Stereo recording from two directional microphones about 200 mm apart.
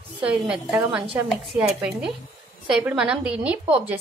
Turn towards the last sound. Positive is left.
turn(degrees=-5)  # may be behind; listen again after turning